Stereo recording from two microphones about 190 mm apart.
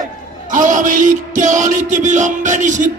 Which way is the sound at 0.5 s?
45° right (ahead or behind).